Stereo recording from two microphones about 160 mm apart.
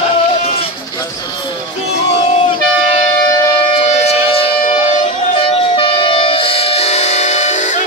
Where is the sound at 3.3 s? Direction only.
20° left (ahead or behind).